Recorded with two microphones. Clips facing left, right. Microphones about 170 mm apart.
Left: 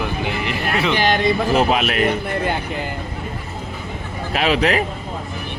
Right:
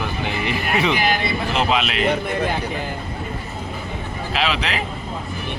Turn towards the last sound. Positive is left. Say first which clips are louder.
# left 5 dB
turn(degrees=45)  # may be behind; listen again after turning